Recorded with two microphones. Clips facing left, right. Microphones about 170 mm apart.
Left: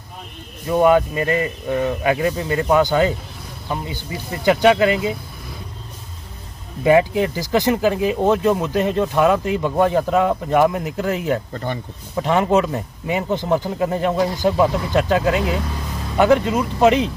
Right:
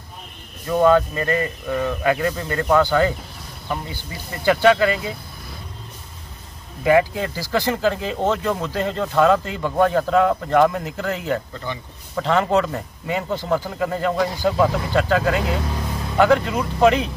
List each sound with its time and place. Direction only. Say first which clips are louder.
0.7 s speech: left 1 dB; 15° left (ahead or behind)
6.8 s speech: left 2 dB; 20° left (ahead or behind)
11.5 s speech: left 4 dB; 50° left (ahead or behind)
12.2 s speech: left 2 dB; 15° left (ahead or behind)